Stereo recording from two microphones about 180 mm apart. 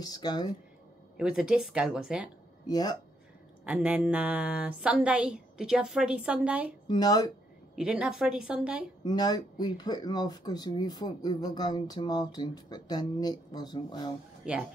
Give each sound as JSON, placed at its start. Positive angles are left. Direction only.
{"t": 0.0, "sound": "speech", "side_deg": 20}
{"t": 1.1, "sound": "speech", "side_deg": -5}
{"t": 2.6, "sound": "speech", "side_deg": 20}
{"t": 3.6, "sound": "speech", "side_deg": -10}
{"t": 6.9, "sound": "speech", "side_deg": 20}
{"t": 7.7, "sound": "speech", "side_deg": -5}
{"t": 9.0, "sound": "speech", "side_deg": 20}
{"t": 14.4, "sound": "speech", "side_deg": -5}